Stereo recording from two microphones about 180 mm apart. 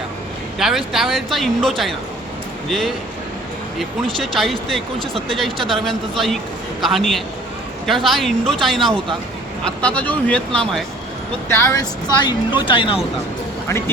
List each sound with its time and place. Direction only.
0.6 s speech: centre (ahead or behind)
11.4 s speech: 15° left (ahead or behind)
13.7 s speech: 15° left (ahead or behind)